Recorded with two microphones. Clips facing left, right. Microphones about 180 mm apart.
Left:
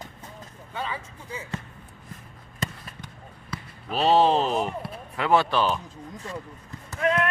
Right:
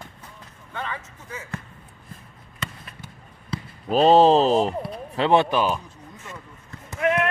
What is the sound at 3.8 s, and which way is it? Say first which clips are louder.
Speech: right 5 dB; 40° right (ahead or behind).